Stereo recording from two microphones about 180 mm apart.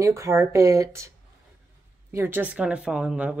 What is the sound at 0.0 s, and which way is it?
Speech, 15° right (ahead or behind).